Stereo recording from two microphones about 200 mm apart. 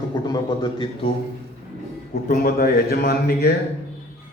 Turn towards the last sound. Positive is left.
turn(degrees=50)  # may be behind; listen again after turning